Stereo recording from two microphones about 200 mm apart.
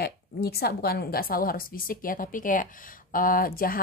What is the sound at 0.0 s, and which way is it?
A woman's voice, 50° left (ahead or behind).